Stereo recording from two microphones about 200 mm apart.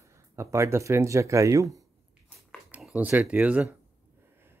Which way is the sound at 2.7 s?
5° right (ahead or behind).